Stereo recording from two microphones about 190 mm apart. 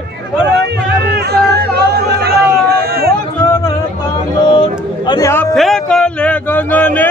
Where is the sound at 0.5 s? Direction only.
60° right (ahead or behind).